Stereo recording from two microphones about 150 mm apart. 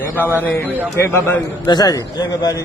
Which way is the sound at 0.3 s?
10° left (ahead or behind).